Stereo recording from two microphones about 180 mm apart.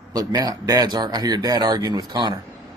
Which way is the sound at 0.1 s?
20° right (ahead or behind).